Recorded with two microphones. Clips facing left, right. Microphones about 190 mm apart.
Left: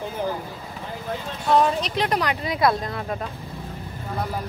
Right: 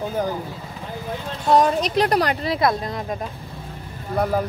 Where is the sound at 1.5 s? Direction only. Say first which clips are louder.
Right 3 dB; 40° right (ahead or behind).